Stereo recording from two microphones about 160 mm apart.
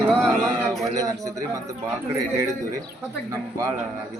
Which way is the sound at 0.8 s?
20° right (ahead or behind).